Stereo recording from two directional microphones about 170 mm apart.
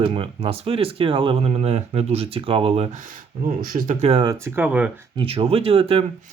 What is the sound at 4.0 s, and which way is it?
Speech, 35° right (ahead or behind).